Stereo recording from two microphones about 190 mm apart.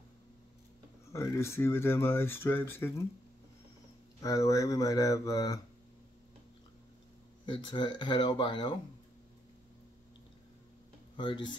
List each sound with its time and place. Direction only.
1.1 s speech: 15° left (ahead or behind)
4.2 s speech: 15° left (ahead or behind)
7.4 s speech: 25° left (ahead or behind)
11.1 s speech: 25° left (ahead or behind)